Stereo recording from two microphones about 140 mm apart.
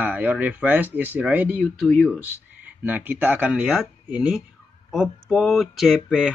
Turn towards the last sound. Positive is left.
turn(degrees=0)  # may be behind; listen again after turning